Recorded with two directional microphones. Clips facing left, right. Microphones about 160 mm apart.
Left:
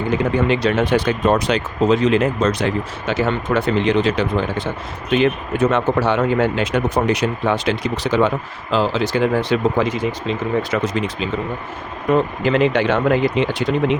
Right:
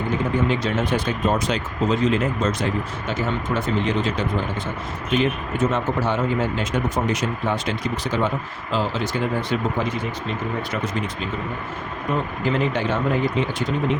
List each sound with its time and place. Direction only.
0.4 s speech: 75° left (ahead or behind)